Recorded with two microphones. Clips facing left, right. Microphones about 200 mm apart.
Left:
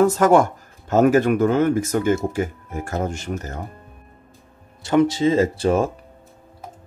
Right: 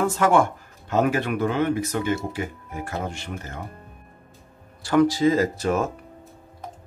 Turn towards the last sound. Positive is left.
turn(degrees=30)  # may be behind; listen again after turning